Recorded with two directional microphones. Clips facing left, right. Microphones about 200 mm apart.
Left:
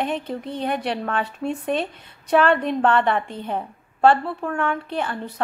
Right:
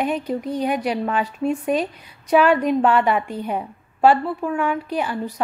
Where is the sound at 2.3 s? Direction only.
5° right (ahead or behind).